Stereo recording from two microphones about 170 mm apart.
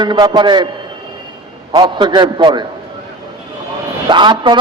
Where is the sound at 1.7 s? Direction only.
25° right (ahead or behind).